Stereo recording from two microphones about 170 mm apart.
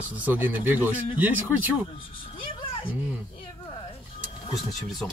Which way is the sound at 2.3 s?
30° left (ahead or behind).